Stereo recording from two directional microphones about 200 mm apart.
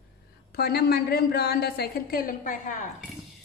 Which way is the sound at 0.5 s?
50° left (ahead or behind).